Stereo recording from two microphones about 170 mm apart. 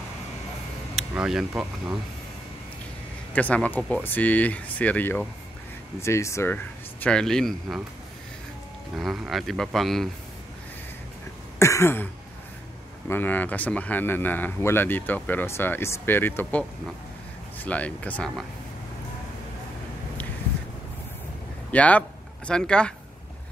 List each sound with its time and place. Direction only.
0.9 s speech: 5° right (ahead or behind)
3.3 s a man's voice: 10° left (ahead or behind)
8.9 s speech: centre (ahead or behind)
11.5 s throat clearing: 15° left (ahead or behind)
13.1 s a man's voice: 10° left (ahead or behind)
21.6 s speech: 10° left (ahead or behind)